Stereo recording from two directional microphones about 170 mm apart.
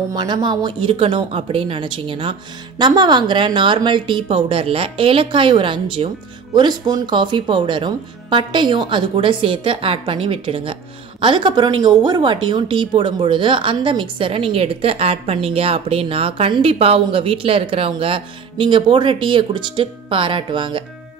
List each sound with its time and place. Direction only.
0.1 s speech: 25° right (ahead or behind)